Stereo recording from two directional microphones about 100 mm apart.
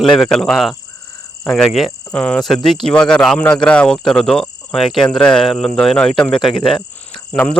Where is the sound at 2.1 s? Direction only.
10° left (ahead or behind).